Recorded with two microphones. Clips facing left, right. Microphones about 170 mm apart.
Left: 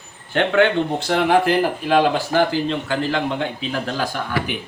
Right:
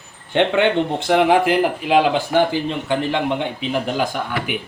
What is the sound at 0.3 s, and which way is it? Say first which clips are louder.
Speech: even; 20° right (ahead or behind).